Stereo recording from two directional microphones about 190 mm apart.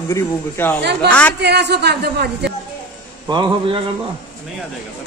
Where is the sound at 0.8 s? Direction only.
60° right (ahead or behind).